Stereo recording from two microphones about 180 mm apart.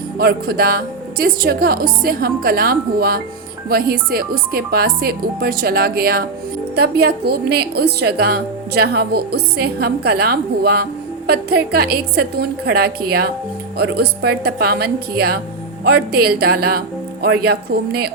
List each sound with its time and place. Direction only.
0.2 s a woman's voice: 60° right (ahead or behind)